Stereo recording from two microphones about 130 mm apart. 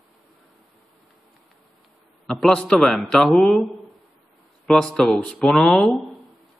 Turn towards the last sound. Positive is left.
turn(degrees=0)  # may be behind; listen again after turning